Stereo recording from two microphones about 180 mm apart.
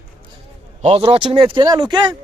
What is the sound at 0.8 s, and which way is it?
Speech, 35° right (ahead or behind).